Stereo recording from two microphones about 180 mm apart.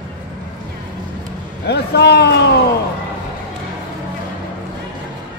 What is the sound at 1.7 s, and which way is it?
Speech, 65° left (ahead or behind).